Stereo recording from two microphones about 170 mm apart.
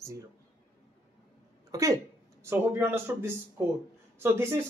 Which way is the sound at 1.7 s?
20° right (ahead or behind).